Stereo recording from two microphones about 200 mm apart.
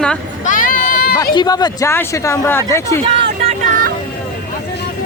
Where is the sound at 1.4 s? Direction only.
20° left (ahead or behind).